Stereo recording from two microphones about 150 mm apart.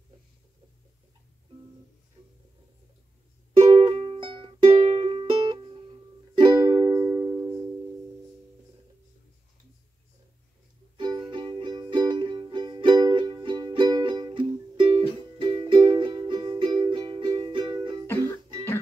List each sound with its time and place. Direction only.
3.7 s music: 35° right (ahead or behind)
11.0 s music: 30° right (ahead or behind)